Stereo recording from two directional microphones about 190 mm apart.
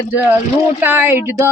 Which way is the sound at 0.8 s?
10° right (ahead or behind).